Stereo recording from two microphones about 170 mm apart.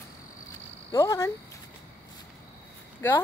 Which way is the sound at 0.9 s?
15° left (ahead or behind).